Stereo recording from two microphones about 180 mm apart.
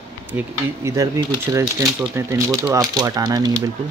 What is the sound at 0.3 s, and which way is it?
Speech, 15° right (ahead or behind).